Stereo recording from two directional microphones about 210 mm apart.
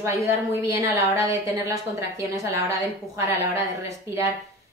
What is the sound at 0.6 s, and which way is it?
A woman's voice, 15° right (ahead or behind).